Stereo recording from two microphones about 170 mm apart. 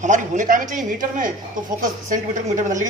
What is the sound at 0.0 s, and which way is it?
Speech, 50° right (ahead or behind).